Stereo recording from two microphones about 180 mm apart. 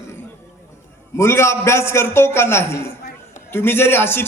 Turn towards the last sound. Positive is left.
turn(degrees=10)  # may be behind; listen again after turning